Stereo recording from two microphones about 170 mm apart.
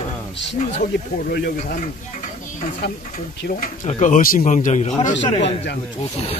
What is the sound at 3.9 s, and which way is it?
A man's voice, 45° left (ahead or behind).